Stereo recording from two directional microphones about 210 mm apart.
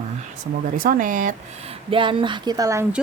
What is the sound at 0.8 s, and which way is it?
Speech, 40° right (ahead or behind).